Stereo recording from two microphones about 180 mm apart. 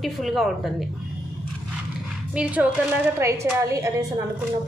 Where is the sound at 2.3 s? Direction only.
5° right (ahead or behind).